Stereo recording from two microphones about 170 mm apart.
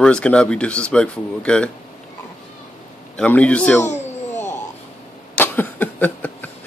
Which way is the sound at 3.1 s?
5° left (ahead or behind).